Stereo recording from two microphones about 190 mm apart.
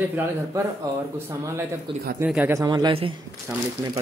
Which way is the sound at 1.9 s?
25° right (ahead or behind).